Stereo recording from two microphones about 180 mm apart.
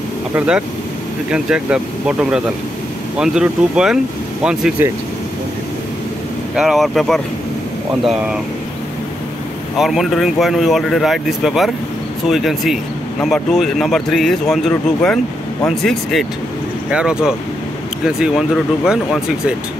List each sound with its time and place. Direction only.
1.3 s speech: 5° right (ahead or behind)
6.5 s speech: centre (ahead or behind)
9.8 s speech: centre (ahead or behind)
18.9 s speech: 5° right (ahead or behind)